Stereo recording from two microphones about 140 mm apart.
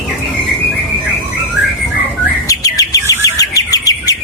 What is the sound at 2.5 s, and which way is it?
Bird, 25° left (ahead or behind).